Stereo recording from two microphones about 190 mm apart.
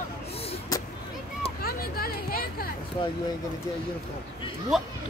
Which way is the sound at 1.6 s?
50° left (ahead or behind).